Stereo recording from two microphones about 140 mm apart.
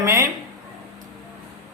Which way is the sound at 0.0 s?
20° right (ahead or behind).